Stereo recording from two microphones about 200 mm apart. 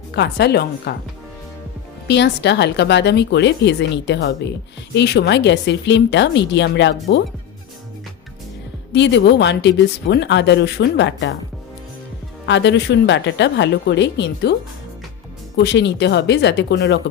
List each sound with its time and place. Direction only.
0.1 s speech: 55° left (ahead or behind)
2.0 s speech: 60° left (ahead or behind)
8.9 s speech: 60° left (ahead or behind)
12.5 s speech: 60° left (ahead or behind)
15.5 s speech: 60° left (ahead or behind)